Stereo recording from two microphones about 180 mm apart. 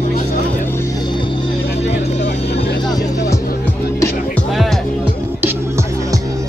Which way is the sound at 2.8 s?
20° left (ahead or behind).